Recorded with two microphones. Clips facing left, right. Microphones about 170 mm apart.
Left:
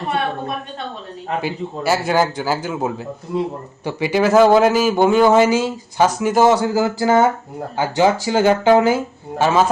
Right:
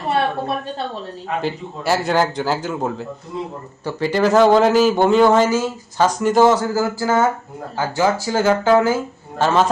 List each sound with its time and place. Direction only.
1.4 s a man's voice: 5° left (ahead or behind); by 9.0 s 20° left (ahead or behind)
9.4 s speech: 5° left (ahead or behind)